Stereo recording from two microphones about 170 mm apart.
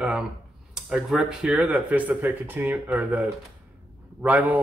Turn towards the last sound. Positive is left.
turn(degrees=-10)  # may be behind; listen again after turning